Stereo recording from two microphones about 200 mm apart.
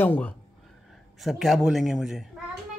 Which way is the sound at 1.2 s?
Centre (ahead or behind).